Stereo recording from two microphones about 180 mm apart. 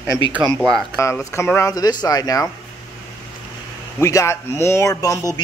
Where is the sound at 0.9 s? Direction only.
15° left (ahead or behind).